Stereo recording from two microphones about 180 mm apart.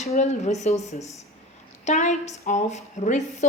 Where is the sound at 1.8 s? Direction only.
40° left (ahead or behind).